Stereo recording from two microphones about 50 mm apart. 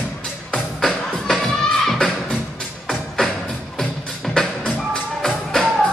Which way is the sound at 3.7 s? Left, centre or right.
Centre.